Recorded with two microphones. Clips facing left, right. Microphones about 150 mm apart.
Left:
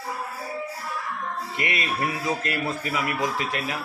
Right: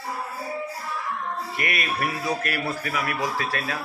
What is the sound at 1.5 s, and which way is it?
A man's voice, 20° left (ahead or behind).